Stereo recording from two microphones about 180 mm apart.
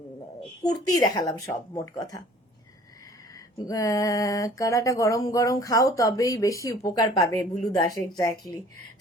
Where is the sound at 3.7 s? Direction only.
20° left (ahead or behind).